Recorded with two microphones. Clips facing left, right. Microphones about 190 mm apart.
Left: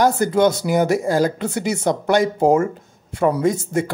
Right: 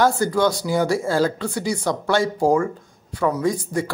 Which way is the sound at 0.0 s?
20° left (ahead or behind).